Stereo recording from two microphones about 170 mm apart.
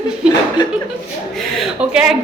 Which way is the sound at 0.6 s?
25° left (ahead or behind).